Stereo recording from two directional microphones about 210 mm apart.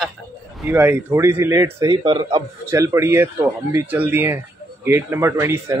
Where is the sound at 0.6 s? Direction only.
5° right (ahead or behind).